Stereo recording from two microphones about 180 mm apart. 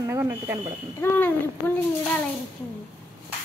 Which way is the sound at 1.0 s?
10° left (ahead or behind).